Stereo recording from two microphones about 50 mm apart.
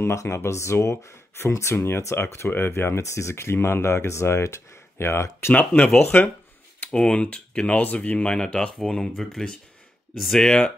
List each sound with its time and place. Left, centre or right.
0.0 s speech: left
2.1 s speech: left
3.0 s speech: left
6.1 s speech: left
6.9 s speech: left
8.3 s speech: centre